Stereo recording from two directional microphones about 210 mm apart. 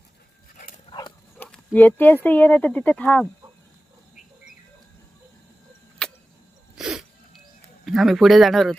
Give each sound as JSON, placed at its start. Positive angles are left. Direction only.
{"t": 0.5, "sound": "dog", "side_deg": 40}
{"t": 0.9, "sound": "dog", "side_deg": 20}
{"t": 1.4, "sound": "a sound", "side_deg": 5}
{"t": 2.2, "sound": "speech", "side_deg": 10}
{"t": 6.0, "sound": "tick-tock", "side_deg": 5}
{"t": 6.7, "sound": "sneeze", "side_deg": 0}
{"t": 7.9, "sound": "speech", "side_deg": 0}